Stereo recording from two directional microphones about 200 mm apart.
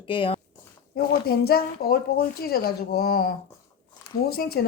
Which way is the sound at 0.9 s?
50° left (ahead or behind).